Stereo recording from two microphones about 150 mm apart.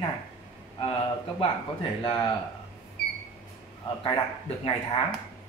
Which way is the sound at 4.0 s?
40° left (ahead or behind).